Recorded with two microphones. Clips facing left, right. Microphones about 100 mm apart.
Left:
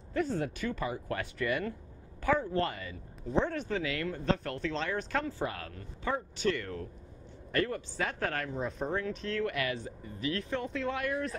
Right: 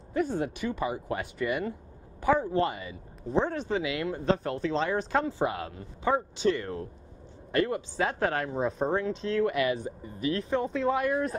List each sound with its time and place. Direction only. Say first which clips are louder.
0.1 s speech: right 3 dB; 15° right (ahead or behind)